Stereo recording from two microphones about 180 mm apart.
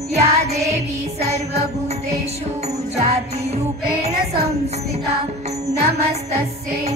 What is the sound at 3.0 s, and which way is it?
Music, 35° right (ahead or behind).